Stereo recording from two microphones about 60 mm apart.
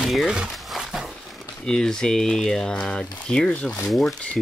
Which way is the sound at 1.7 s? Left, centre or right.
Centre.